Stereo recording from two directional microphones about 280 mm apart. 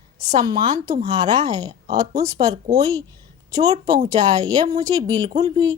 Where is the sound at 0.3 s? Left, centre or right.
Centre.